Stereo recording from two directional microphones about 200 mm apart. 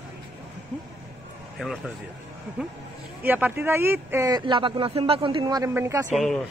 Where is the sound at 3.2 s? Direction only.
10° right (ahead or behind).